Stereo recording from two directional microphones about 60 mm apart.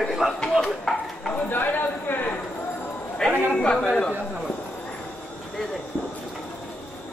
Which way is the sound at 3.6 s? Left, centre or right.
Centre.